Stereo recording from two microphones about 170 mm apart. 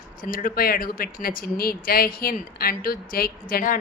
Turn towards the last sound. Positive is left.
turn(degrees=55)  # may be behind; listen again after turning